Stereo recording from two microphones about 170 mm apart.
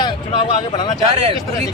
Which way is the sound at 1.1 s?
35° right (ahead or behind).